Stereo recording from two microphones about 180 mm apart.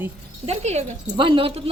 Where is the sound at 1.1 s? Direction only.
25° right (ahead or behind).